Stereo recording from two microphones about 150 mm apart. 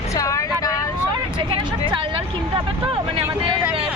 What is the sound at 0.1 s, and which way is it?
Vehicle, 20° left (ahead or behind).